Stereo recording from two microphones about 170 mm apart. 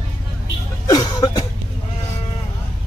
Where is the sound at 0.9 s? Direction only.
25° left (ahead or behind).